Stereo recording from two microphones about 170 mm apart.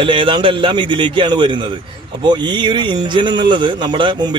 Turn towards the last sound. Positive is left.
turn(degrees=-30)  # may be behind; listen again after turning